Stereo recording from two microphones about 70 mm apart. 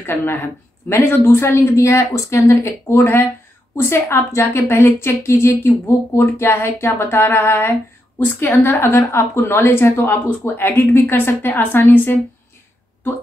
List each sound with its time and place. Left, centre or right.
0.0 s a woman's voice: left